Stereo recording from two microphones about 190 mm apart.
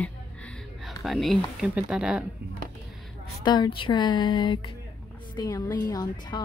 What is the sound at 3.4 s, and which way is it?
Speech, 25° left (ahead or behind).